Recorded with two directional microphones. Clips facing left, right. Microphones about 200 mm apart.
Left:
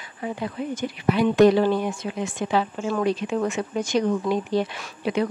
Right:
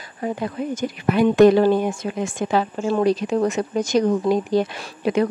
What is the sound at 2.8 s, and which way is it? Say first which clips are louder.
Speech: right 4 dB; 35° right (ahead or behind).